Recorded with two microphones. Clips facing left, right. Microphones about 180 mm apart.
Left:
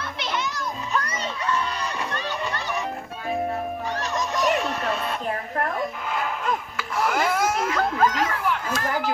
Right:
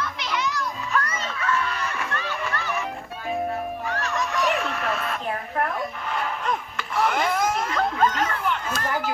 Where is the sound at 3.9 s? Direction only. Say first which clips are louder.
Right 1 dB; centre (ahead or behind).